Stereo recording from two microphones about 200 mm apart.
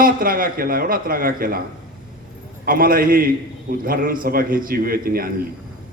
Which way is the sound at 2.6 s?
45° right (ahead or behind).